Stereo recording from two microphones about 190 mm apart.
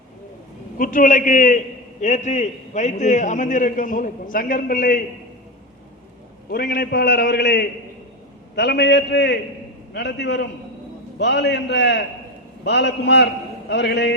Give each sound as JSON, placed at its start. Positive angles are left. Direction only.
{"t": 0.8, "sound": "a man's voice", "side_deg": 45}
{"t": 6.5, "sound": "a man's voice", "side_deg": 55}